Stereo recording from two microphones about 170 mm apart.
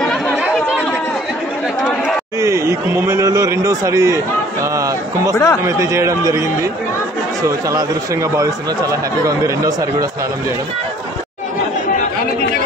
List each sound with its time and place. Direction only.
2.4 s a man's voice: 20° right (ahead or behind)
5.3 s speech: 20° left (ahead or behind)
5.6 s speech: 15° right (ahead or behind)